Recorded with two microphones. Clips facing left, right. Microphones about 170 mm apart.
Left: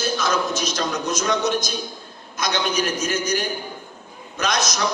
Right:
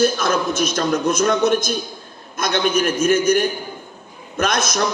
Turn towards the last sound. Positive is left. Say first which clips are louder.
# right 3 dB
turn(degrees=-55)  # may be behind; listen again after turning